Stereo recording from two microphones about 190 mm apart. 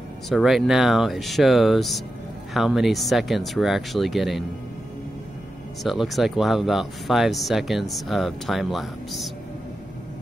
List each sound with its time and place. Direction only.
0.3 s speech: centre (ahead or behind)
5.9 s speech: centre (ahead or behind)